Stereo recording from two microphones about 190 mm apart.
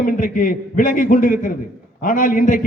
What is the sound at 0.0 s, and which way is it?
A man's voice, 45° left (ahead or behind).